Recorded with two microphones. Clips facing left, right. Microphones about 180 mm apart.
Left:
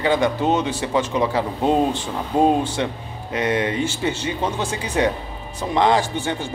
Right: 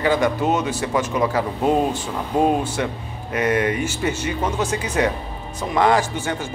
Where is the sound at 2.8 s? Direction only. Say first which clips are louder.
Even; 25° left (ahead or behind).